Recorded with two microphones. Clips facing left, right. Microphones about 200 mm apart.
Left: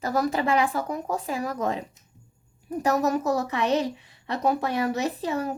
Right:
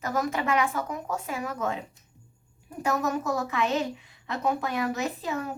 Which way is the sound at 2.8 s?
35° left (ahead or behind).